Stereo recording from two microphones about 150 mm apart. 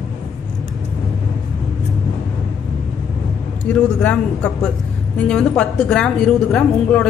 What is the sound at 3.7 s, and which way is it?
Speech, 5° left (ahead or behind).